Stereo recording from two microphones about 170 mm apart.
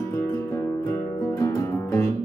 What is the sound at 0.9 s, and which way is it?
Music, 20° left (ahead or behind).